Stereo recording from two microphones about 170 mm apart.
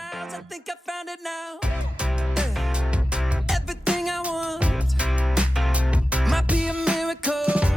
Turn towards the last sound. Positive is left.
turn(degrees=-5)  # may be behind; listen again after turning